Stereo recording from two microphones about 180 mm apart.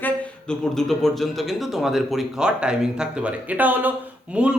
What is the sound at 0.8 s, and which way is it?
A man's voice, centre (ahead or behind).